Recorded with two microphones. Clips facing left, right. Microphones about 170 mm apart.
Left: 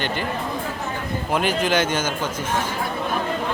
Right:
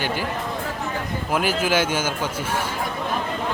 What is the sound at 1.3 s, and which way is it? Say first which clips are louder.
Speech: left 1 dB; 5° right (ahead or behind).